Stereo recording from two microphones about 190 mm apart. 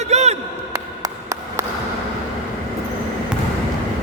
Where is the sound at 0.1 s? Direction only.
35° right (ahead or behind).